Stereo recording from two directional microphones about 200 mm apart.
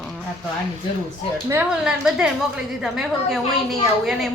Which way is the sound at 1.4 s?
5° right (ahead or behind).